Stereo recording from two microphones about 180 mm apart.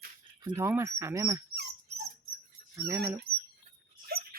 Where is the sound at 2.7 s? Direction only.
15° right (ahead or behind).